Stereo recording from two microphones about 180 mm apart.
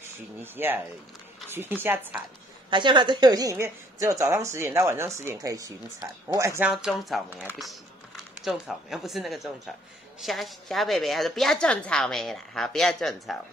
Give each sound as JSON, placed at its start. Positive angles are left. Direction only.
{"t": 0.0, "sound": "a woman's voice", "side_deg": -10}
{"t": 2.7, "sound": "a woman's voice", "side_deg": -25}
{"t": 6.7, "sound": "a woman's voice", "side_deg": 0}
{"t": 8.4, "sound": "a woman's voice", "side_deg": 0}